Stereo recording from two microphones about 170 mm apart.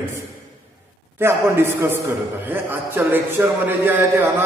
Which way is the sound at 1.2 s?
15° right (ahead or behind).